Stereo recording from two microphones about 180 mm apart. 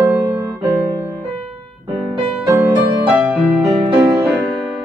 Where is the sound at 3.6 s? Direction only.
25° right (ahead or behind).